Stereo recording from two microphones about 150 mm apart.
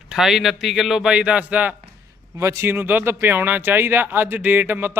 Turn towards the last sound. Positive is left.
turn(degrees=-15)  # may be behind; listen again after turning